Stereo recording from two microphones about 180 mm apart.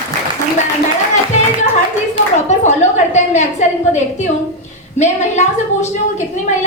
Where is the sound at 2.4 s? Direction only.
40° left (ahead or behind).